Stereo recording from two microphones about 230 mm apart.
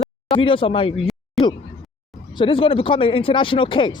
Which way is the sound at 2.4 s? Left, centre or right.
Left.